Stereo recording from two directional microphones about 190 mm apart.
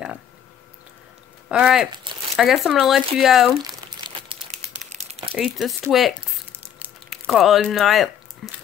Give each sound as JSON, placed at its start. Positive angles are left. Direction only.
{"t": 1.5, "sound": "speech", "side_deg": -5}
{"t": 3.6, "sound": "crumpling", "side_deg": -25}
{"t": 5.3, "sound": "speech", "side_deg": 0}
{"t": 6.5, "sound": "crumpling", "side_deg": -10}